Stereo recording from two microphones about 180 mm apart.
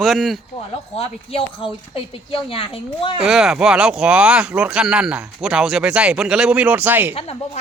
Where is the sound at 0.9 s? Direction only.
35° left (ahead or behind).